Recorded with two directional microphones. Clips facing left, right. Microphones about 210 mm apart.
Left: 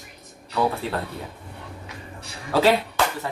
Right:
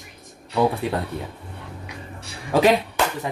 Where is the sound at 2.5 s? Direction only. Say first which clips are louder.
Right 2 dB; 15° right (ahead or behind).